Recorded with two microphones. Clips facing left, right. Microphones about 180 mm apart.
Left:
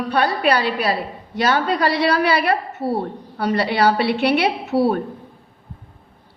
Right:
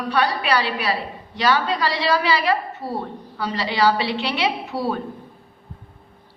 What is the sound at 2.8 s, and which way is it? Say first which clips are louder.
Speech: left 6 dB; 30° left (ahead or behind).